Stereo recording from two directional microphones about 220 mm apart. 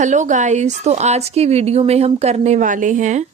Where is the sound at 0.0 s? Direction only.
35° right (ahead or behind).